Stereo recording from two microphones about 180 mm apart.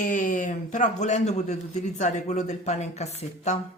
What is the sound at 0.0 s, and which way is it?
A man's voice, 45° left (ahead or behind).